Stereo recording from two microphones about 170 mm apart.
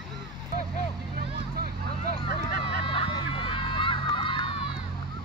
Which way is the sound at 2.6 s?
30° left (ahead or behind).